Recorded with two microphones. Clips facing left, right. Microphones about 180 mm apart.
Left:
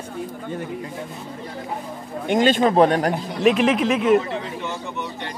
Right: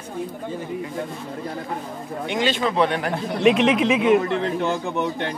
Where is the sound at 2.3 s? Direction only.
45° left (ahead or behind).